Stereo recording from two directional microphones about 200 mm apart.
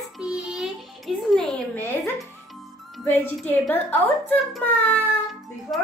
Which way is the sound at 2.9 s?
10° left (ahead or behind).